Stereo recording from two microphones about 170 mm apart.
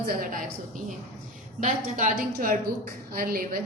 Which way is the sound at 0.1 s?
55° right (ahead or behind).